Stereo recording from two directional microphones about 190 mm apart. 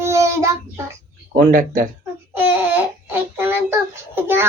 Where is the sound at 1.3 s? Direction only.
45° right (ahead or behind).